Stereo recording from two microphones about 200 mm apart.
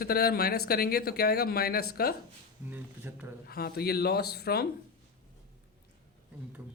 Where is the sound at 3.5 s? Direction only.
50° left (ahead or behind).